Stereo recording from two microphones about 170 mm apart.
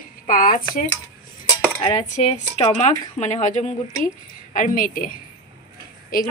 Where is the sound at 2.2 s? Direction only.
40° left (ahead or behind); by 5.1 s 55° left (ahead or behind).